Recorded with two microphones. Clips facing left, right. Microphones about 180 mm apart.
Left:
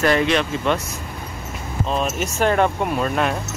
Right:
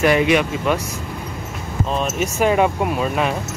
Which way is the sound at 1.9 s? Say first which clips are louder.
Right 1 dB; 5° right (ahead or behind).